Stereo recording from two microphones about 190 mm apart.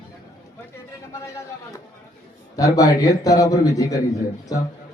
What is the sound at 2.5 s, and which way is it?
A man's voice, 20° left (ahead or behind).